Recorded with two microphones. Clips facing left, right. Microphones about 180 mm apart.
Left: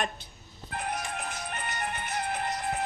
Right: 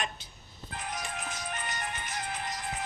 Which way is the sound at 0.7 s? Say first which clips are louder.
Left 4 dB; 60° left (ahead or behind).